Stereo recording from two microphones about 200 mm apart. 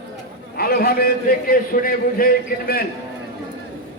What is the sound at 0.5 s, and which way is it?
A man's voice, 50° left (ahead or behind).